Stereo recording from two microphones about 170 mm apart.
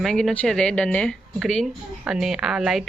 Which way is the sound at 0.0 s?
Centre (ahead or behind).